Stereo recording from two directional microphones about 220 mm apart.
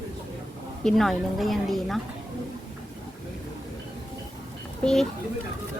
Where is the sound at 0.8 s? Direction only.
Centre (ahead or behind).